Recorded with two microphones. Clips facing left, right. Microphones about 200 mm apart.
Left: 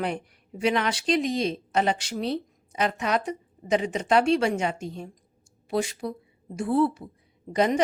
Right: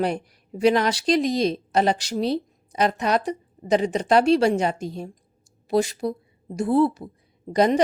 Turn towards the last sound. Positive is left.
turn(degrees=-35)  # may be behind; listen again after turning